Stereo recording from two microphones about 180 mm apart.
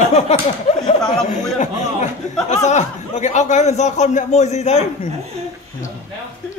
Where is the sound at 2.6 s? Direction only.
40° left (ahead or behind).